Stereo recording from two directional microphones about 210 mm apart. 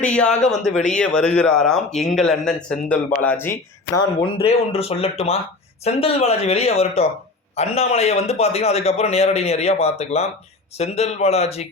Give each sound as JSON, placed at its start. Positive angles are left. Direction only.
{"t": 0.0, "sound": "a man's voice", "side_deg": 5}